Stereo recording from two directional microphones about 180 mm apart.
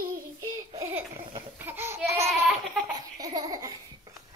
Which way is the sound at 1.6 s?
15° right (ahead or behind).